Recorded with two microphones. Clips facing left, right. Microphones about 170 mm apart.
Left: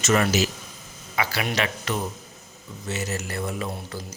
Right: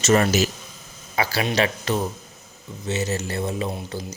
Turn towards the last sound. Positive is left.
turn(degrees=-20)  # may be behind; listen again after turning